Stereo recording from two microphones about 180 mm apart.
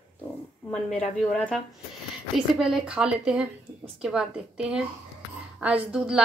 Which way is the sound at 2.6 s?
5° right (ahead or behind).